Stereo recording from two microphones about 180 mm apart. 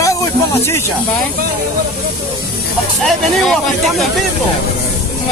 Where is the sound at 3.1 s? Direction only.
Centre (ahead or behind).